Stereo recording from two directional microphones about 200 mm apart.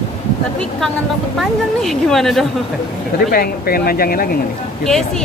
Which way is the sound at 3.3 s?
50° left (ahead or behind).